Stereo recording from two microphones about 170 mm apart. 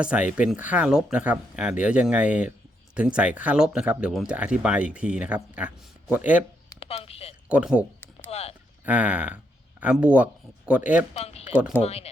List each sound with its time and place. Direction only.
0.0 s speech: 5° right (ahead or behind)
6.7 s a sound: 35° left (ahead or behind)
7.4 s speech: 5° right (ahead or behind)
8.3 s a sound: 35° left (ahead or behind)
8.8 s speech: 10° right (ahead or behind)
11.1 s speech: 40° left (ahead or behind)